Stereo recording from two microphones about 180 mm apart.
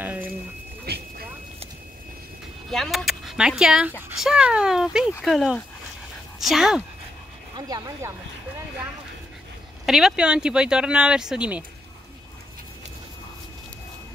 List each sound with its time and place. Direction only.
0.0 s a sound: 10° right (ahead or behind)
0.8 s vehicle: 60° right (ahead or behind)
2.7 s speech: centre (ahead or behind)
7.5 s speech: 20° right (ahead or behind)
9.8 s speech: centre (ahead or behind)